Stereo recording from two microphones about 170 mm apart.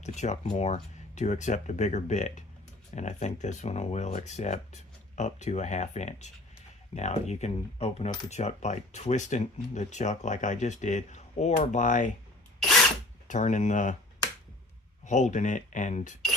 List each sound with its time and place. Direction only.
0.0 s speech: 45° left (ahead or behind)
13.2 s speech: 45° left (ahead or behind)
15.0 s speech: 45° left (ahead or behind)